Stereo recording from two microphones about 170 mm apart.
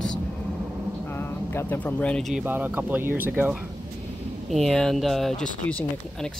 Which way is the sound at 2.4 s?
10° right (ahead or behind).